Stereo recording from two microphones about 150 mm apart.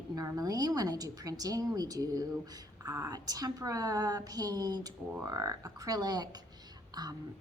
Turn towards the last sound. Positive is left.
turn(degrees=-25)  # may be behind; listen again after turning